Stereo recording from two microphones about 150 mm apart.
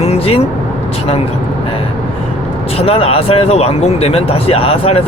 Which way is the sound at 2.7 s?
40° left (ahead or behind).